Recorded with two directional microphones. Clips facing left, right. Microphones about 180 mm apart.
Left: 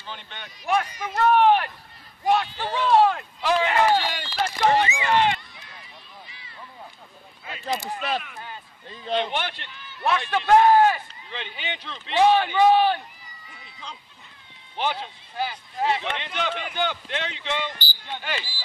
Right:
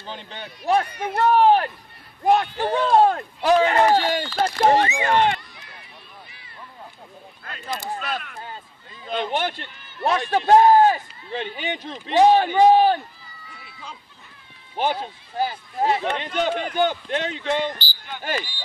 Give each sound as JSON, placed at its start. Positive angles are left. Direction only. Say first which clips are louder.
{"t": 0.0, "sound": "speech", "louder": "right 4 dB", "side_deg": -35}
{"t": 0.8, "sound": "speech", "louder": "right 3 dB", "side_deg": -60}
{"t": 1.3, "sound": "speech", "louder": "right 2 dB", "side_deg": -35}
{"t": 2.2, "sound": "a man's voice", "louder": "right 4 dB", "side_deg": -55}
{"t": 4.6, "sound": "a man's voice", "louder": "right 2 dB", "side_deg": -40}
{"t": 6.2, "sound": "a sound", "louder": "even", "side_deg": -55}
{"t": 7.4, "sound": "speech", "louder": "left 1 dB", "side_deg": 5}
{"t": 9.2, "sound": "a man's voice", "louder": "right 3 dB", "side_deg": -45}
{"t": 14.8, "sound": "a man's voice", "louder": "right 4 dB", "side_deg": -45}